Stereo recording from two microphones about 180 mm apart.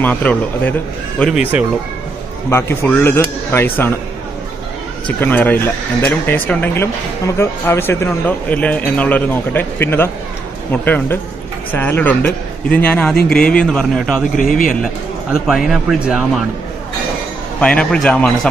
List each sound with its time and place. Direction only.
0.0 s speech: 10° left (ahead or behind)
1.2 s speech: 5° right (ahead or behind)
2.5 s speech: 10° left (ahead or behind)
5.0 s a man's voice: 10° left (ahead or behind)
14.3 s speech: 50° left (ahead or behind)
15.4 s a man's voice: centre (ahead or behind)
17.6 s speech: 5° left (ahead or behind)